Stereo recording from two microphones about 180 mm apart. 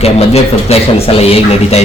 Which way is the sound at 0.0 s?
35° left (ahead or behind).